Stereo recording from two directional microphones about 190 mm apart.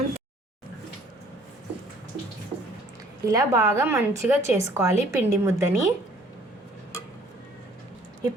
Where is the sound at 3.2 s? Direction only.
15° right (ahead or behind).